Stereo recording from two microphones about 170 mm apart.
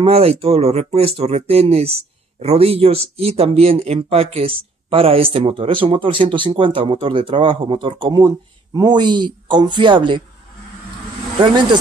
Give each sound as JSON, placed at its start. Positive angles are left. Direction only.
{"t": 0.0, "sound": "speech", "side_deg": -35}
{"t": 11.4, "sound": "speech", "side_deg": -25}